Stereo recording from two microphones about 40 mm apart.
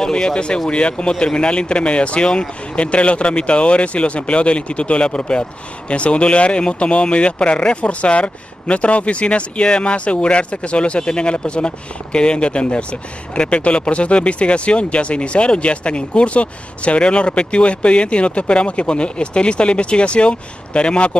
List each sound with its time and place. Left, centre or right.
0.0 s speech: centre